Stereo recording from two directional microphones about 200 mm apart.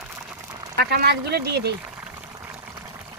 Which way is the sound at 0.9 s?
55° right (ahead or behind).